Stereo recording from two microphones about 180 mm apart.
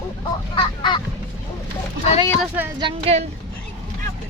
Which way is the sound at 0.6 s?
25° left (ahead or behind).